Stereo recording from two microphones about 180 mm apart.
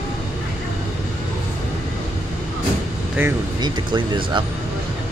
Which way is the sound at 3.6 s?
25° right (ahead or behind).